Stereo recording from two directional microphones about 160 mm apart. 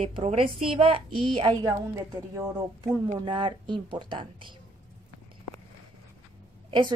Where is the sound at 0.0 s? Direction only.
35° right (ahead or behind).